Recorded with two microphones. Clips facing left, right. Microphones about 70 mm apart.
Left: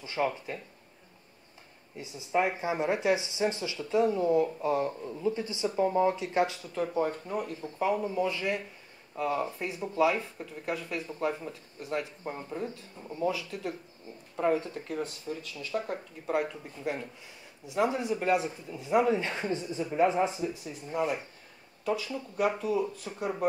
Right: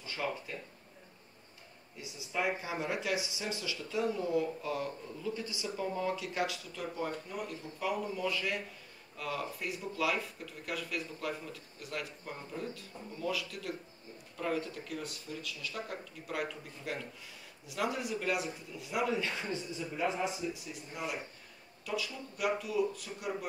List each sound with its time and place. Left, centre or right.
0.0 s speech: left
2.0 s speech: left